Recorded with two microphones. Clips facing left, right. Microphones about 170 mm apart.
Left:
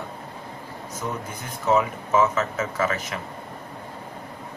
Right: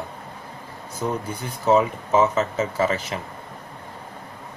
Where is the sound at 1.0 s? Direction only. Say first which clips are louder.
Right 6 dB; 30° right (ahead or behind).